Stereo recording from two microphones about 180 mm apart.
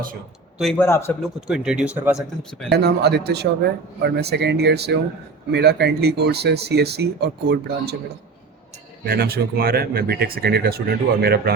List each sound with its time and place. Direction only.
0.6 s speech: 5° left (ahead or behind)
0.9 s a man's voice: 15° left (ahead or behind)
1.5 s speech: 5° right (ahead or behind)
2.6 s speech: 65° right (ahead or behind)
9.0 s speech: 60° right (ahead or behind)